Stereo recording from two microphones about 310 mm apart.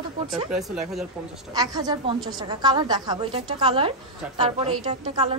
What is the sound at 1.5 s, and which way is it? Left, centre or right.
A woman's voice, centre.